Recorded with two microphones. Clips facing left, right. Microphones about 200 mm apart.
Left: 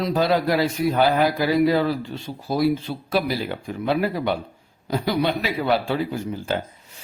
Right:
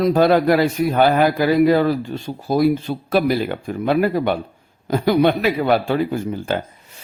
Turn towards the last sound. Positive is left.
turn(degrees=-55)  # may be behind; listen again after turning